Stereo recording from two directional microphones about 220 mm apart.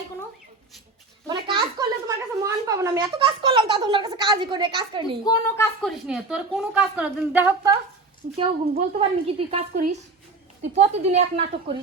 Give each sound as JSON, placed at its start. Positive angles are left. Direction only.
{"t": 1.3, "sound": "a sound", "side_deg": -20}
{"t": 5.2, "sound": "a woman's voice", "side_deg": 15}
{"t": 5.8, "sound": "a woman's voice", "side_deg": 0}
{"t": 9.0, "sound": "a woman's voice", "side_deg": -25}